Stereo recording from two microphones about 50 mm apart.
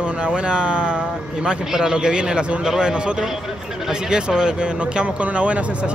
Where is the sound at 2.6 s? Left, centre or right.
Centre.